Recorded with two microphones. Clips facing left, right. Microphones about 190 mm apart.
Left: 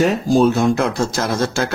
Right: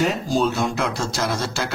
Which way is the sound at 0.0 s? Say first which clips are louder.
Left 6 dB; 50° left (ahead or behind).